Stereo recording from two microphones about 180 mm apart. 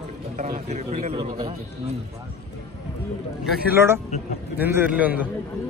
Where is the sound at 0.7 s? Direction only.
40° right (ahead or behind).